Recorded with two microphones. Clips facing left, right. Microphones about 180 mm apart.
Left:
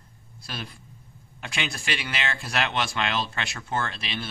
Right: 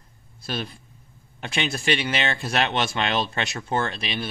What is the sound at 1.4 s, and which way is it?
Speech, 25° right (ahead or behind).